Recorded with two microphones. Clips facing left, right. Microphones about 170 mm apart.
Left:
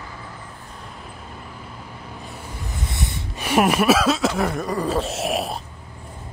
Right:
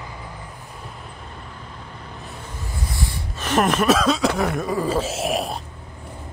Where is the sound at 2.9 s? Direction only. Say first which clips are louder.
Right 1 dB; 20° left (ahead or behind).